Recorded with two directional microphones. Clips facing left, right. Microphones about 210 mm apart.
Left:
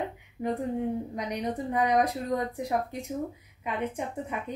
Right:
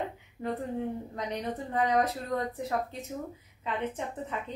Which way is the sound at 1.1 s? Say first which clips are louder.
Left 3 dB; 15° left (ahead or behind).